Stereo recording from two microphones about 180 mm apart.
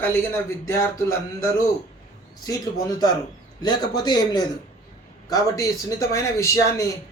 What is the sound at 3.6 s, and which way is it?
A man's voice, 25° left (ahead or behind).